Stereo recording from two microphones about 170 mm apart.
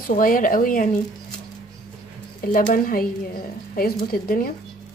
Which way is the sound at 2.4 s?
55° left (ahead or behind).